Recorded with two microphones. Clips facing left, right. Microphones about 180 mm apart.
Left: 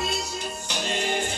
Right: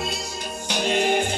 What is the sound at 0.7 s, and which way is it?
Music, 60° right (ahead or behind).